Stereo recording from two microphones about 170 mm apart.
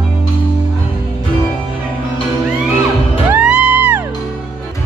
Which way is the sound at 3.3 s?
5° right (ahead or behind).